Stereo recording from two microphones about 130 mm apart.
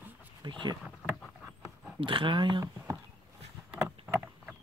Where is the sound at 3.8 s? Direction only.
15° right (ahead or behind).